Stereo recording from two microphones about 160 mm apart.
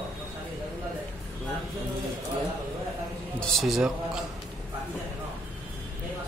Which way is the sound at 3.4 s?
Centre (ahead or behind).